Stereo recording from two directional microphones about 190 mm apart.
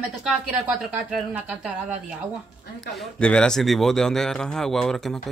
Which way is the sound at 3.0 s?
5° left (ahead or behind).